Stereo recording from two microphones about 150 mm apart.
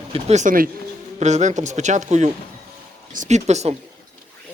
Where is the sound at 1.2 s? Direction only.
50° right (ahead or behind).